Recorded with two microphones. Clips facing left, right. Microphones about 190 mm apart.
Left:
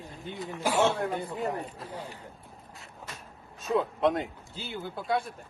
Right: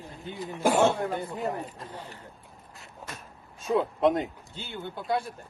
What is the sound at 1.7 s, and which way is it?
Speech, 10° left (ahead or behind).